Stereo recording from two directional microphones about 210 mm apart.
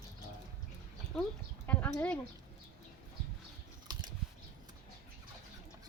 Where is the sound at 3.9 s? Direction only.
20° right (ahead or behind).